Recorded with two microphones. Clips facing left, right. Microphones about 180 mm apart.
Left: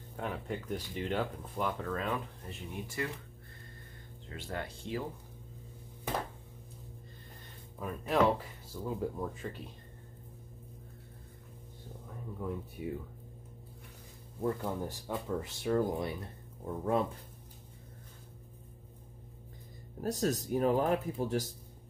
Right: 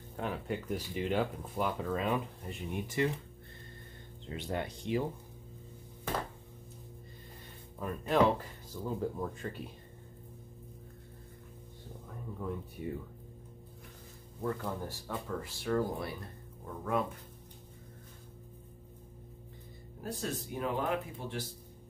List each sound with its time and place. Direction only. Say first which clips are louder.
0.1 s speech: right 1 dB; 5° right (ahead or behind); by 3.1 s 20° right (ahead or behind)
4.3 s speech: right 4 dB; 20° right (ahead or behind)
7.8 s speech: right 1 dB; centre (ahead or behind)
12.4 s speech: left 1 dB; 5° left (ahead or behind)
14.4 s speech: left 2 dB; 20° left (ahead or behind)
20.0 s speech: left 6 dB; 40° left (ahead or behind)